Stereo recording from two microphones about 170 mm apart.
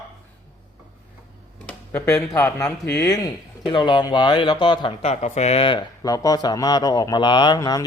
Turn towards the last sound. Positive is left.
turn(degrees=20)  # may be behind; listen again after turning